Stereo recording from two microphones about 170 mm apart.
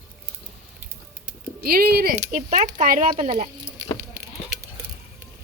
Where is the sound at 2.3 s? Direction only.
50° right (ahead or behind).